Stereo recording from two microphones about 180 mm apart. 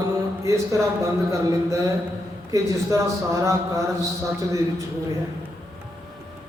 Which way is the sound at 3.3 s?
15° right (ahead or behind).